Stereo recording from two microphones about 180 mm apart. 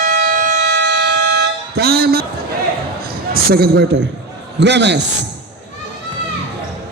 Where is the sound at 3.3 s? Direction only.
60° right (ahead or behind).